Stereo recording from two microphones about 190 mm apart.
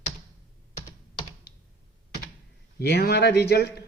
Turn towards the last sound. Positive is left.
turn(degrees=55)  # may be behind; listen again after turning